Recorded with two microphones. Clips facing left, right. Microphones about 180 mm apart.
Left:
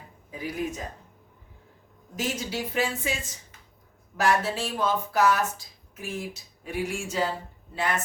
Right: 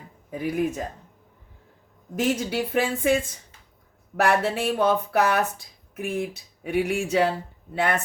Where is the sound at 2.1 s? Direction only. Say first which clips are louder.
Right 6 dB; 55° right (ahead or behind).